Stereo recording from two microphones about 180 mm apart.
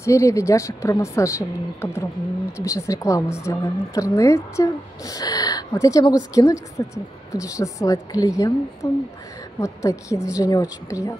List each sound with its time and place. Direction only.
0.0 s a woman's voice: 15° left (ahead or behind)